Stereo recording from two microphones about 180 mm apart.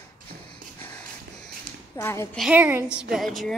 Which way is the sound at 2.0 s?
15° left (ahead or behind).